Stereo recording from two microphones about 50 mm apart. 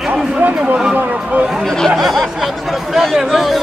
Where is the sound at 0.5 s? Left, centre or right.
Centre.